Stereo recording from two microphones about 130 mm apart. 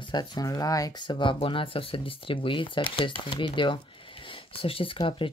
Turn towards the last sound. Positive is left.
turn(degrees=40)  # may be behind; listen again after turning